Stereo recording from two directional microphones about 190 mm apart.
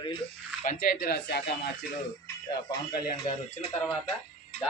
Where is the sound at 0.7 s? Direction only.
50° left (ahead or behind).